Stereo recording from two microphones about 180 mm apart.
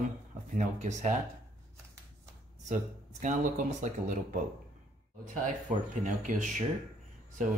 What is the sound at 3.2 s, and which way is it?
Speech, 40° right (ahead or behind).